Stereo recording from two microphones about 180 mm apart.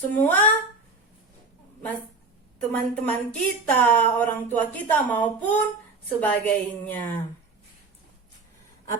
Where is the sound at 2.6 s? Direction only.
5° left (ahead or behind).